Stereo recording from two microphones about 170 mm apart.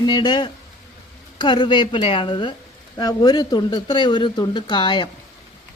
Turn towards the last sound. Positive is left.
turn(degrees=25)  # may be behind; listen again after turning